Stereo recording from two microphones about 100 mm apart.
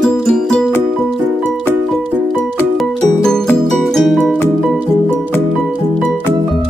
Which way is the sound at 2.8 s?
5° left (ahead or behind).